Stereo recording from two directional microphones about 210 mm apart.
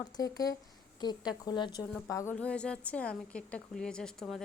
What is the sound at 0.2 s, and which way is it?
A woman's voice, 15° left (ahead or behind).